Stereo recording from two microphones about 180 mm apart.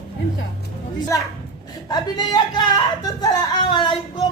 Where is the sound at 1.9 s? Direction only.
25° left (ahead or behind).